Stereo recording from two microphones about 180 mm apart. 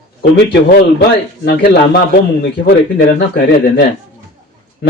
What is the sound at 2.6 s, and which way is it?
Speech, 55° left (ahead or behind).